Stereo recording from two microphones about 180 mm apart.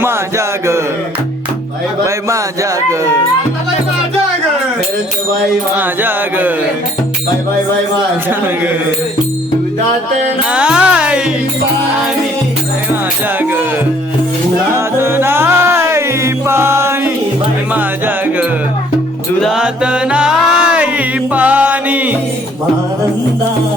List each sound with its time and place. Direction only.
0.0 s mantra: 15° right (ahead or behind)
2.0 s a sound: 15° right (ahead or behind)
5.7 s music: 10° right (ahead or behind)
10.5 s music: 5° right (ahead or behind)
12.9 s speech: 10° right (ahead or behind)
14.7 s music: 15° right (ahead or behind)